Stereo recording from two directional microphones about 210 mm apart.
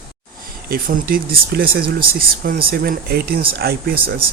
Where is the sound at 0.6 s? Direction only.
45° right (ahead or behind).